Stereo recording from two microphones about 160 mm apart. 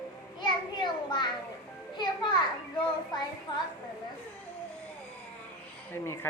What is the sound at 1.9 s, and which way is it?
Speech, 25° left (ahead or behind).